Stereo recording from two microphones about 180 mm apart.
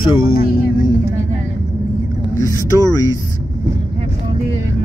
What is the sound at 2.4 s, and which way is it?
Speech, 15° right (ahead or behind).